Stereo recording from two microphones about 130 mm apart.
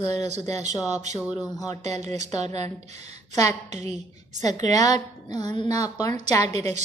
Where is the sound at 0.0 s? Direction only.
60° right (ahead or behind).